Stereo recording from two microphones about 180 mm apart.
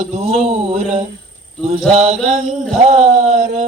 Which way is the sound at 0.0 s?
35° right (ahead or behind).